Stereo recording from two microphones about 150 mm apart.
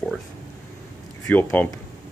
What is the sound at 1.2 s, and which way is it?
Speech, 15° left (ahead or behind).